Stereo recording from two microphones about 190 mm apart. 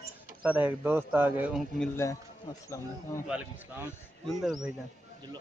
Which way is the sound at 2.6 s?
15° left (ahead or behind).